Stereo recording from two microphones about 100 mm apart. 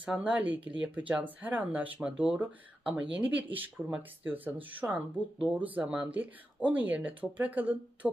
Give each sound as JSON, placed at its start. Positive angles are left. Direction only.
{"t": 0.0, "sound": "speech", "side_deg": -15}